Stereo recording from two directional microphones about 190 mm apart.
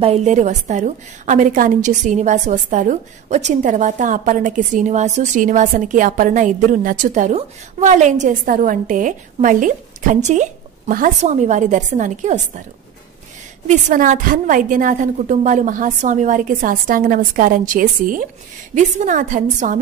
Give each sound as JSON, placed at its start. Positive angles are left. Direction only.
{"t": 0.0, "sound": "a woman's voice", "side_deg": -35}
{"t": 13.7, "sound": "a woman's voice", "side_deg": -40}